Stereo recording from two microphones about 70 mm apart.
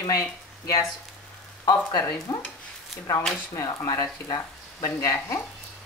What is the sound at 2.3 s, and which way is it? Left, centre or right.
Stir, left.